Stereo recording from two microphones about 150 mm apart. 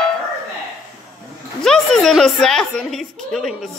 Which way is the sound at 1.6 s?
5° left (ahead or behind).